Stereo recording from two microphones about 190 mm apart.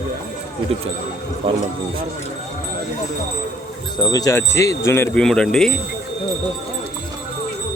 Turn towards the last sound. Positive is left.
turn(degrees=5)  # may be behind; listen again after turning